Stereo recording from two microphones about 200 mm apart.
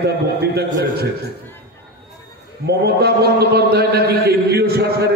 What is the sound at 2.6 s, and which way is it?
A man's voice, 50° right (ahead or behind).